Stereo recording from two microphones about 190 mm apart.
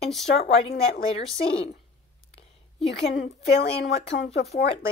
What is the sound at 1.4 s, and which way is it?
Speech, 30° left (ahead or behind).